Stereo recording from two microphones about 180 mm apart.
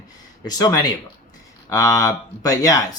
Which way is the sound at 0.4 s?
20° left (ahead or behind).